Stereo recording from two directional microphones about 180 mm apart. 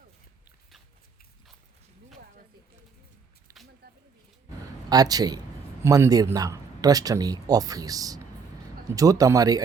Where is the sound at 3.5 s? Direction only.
20° right (ahead or behind).